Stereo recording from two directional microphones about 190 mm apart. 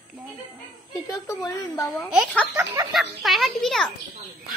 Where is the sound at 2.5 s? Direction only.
15° right (ahead or behind).